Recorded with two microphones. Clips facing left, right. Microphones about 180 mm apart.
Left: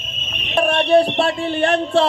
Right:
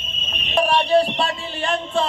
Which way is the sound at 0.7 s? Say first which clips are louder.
Left 4 dB; 65° left (ahead or behind).